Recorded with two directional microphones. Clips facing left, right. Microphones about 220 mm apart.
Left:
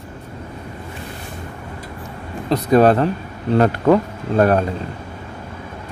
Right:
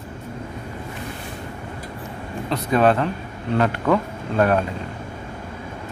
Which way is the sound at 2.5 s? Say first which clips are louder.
Left 5 dB; 40° left (ahead or behind).